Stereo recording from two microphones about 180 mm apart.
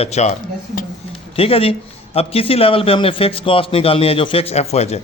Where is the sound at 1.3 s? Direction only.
30° left (ahead or behind).